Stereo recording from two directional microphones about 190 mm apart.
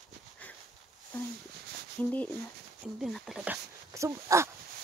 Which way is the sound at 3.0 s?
Centre (ahead or behind).